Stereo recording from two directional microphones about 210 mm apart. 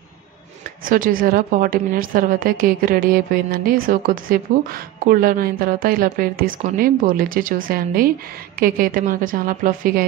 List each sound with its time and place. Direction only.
0.8 s a woman's voice: 40° right (ahead or behind)